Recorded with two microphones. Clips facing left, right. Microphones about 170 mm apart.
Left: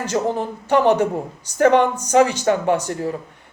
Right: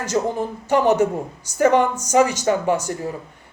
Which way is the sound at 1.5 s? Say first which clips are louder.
Left 2 dB; 10° right (ahead or behind).